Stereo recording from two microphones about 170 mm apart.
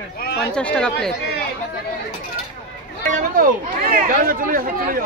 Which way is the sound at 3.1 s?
55° right (ahead or behind).